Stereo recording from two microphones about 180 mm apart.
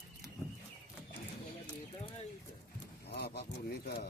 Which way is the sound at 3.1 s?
65° left (ahead or behind).